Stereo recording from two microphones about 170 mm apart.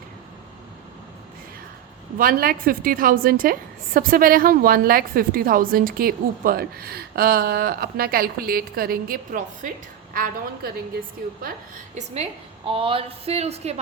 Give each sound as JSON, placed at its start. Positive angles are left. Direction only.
{"t": 2.1, "sound": "a woman's voice", "side_deg": -55}
{"t": 11.9, "sound": "a woman's voice", "side_deg": -40}